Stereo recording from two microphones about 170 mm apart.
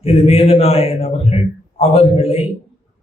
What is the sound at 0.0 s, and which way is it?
A man's voice, 35° left (ahead or behind).